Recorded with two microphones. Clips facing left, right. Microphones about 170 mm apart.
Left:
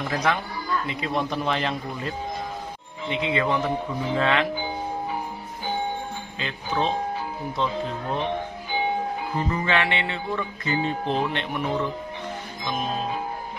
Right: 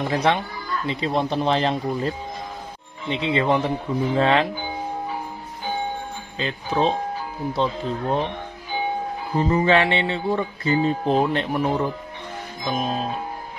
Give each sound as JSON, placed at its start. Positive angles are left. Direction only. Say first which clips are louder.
{"t": 0.0, "sound": "speech", "louder": "right 4 dB", "side_deg": -30}
{"t": 0.8, "sound": "music", "louder": "right 4 dB", "side_deg": -30}
{"t": 6.3, "sound": "music", "louder": "right 4 dB", "side_deg": -35}
{"t": 9.3, "sound": "music", "louder": "right 8 dB", "side_deg": -30}